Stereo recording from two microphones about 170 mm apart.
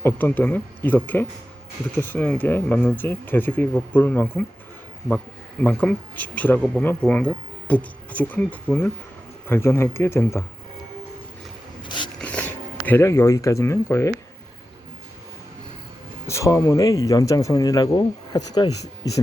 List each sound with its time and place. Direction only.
0.0 s speech: 10° left (ahead or behind)
5.6 s speech: 10° left (ahead or behind)
11.8 s a sound: 25° left (ahead or behind)
12.2 s speech: 5° left (ahead or behind)
16.2 s speech: 15° left (ahead or behind)